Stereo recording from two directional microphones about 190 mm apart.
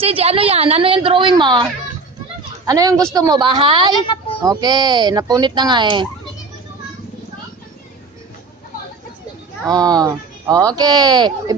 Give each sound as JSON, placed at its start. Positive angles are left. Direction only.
{"t": 0.0, "sound": "speech", "side_deg": -30}
{"t": 2.6, "sound": "speech", "side_deg": -20}
{"t": 4.0, "sound": "a sound", "side_deg": 25}
{"t": 4.4, "sound": "speech", "side_deg": -20}
{"t": 9.6, "sound": "speech", "side_deg": -20}